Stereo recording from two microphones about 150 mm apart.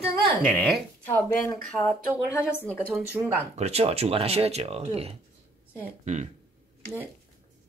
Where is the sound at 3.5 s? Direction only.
45° right (ahead or behind).